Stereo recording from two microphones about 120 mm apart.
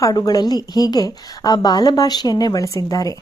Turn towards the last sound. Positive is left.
turn(degrees=30)  # may be behind; listen again after turning